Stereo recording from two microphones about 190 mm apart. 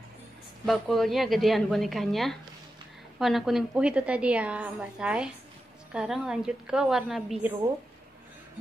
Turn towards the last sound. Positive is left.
turn(degrees=0)  # may be behind; listen again after turning